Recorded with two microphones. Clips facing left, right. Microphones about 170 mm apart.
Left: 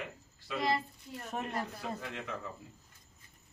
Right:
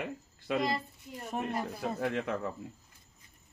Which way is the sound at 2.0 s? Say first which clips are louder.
Right 9 dB; 55° right (ahead or behind).